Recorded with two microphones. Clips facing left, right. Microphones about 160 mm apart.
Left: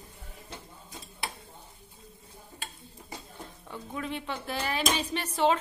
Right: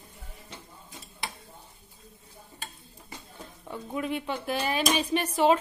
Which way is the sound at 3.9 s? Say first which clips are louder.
Right 4 dB; 15° right (ahead or behind).